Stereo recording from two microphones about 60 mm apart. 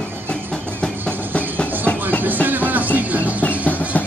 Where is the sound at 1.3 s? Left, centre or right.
Left.